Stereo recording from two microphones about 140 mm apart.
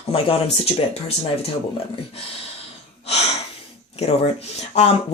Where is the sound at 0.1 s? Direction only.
45° left (ahead or behind).